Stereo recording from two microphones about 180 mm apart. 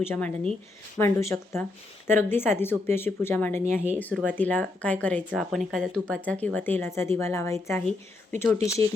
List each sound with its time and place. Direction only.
0.0 s speech: 10° left (ahead or behind)
3.8 s speech: 10° right (ahead or behind)
4.3 s speech: 10° left (ahead or behind)